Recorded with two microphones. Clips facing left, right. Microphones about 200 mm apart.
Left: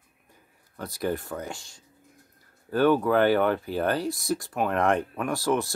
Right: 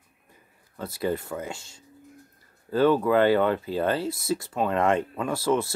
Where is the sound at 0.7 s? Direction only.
5° right (ahead or behind).